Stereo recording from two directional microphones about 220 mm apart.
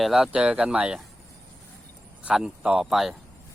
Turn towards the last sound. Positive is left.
turn(degrees=0)  # may be behind; listen again after turning